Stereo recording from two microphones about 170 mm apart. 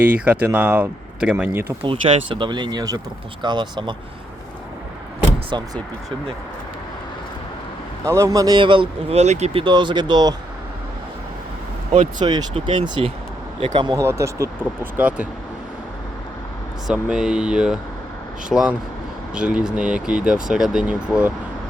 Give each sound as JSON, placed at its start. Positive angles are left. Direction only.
{"t": 0.0, "sound": "speech", "side_deg": -10}
{"t": 1.8, "sound": "speech", "side_deg": -30}
{"t": 5.5, "sound": "speech", "side_deg": -25}
{"t": 8.0, "sound": "speech", "side_deg": -20}
{"t": 12.2, "sound": "speech", "side_deg": -25}
{"t": 14.0, "sound": "speech", "side_deg": -15}
{"t": 16.8, "sound": "speech", "side_deg": -5}